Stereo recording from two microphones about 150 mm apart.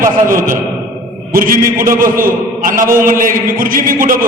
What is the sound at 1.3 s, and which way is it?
A man's voice, 70° right (ahead or behind).